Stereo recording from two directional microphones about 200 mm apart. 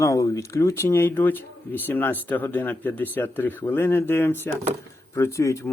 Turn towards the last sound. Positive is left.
turn(degrees=15)  # may be behind; listen again after turning